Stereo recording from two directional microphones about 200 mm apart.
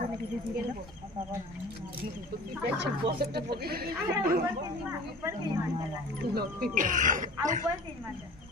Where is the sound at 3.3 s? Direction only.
50° right (ahead or behind).